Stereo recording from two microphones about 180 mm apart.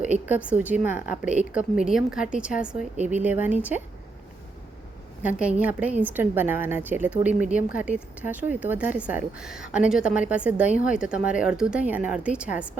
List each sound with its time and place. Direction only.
0.0 s a woman's voice: 10° right (ahead or behind)
3.0 s speech: 40° right (ahead or behind)
3.2 s speech: 10° right (ahead or behind)
5.2 s speech: 5° right (ahead or behind)